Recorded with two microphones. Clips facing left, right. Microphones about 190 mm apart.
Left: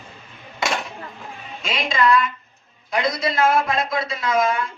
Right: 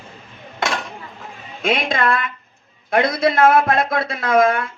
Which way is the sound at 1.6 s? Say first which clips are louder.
Right 2 dB; 55° right (ahead or behind).